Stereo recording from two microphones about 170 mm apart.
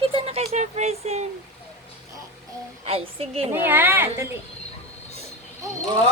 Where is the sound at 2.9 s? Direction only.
35° right (ahead or behind).